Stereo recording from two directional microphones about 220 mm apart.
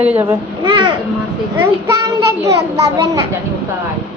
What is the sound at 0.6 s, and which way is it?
Speech, 20° right (ahead or behind).